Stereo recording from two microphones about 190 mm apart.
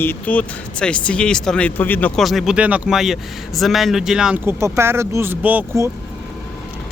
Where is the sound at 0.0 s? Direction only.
10° left (ahead or behind).